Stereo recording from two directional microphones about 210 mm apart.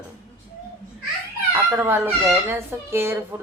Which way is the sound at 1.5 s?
10° right (ahead or behind).